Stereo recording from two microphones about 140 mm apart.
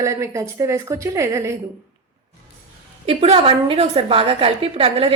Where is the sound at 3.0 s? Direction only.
50° right (ahead or behind).